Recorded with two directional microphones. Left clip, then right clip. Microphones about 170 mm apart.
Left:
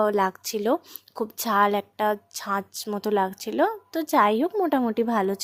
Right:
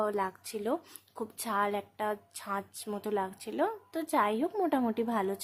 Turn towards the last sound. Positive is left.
turn(degrees=35)  # may be behind; listen again after turning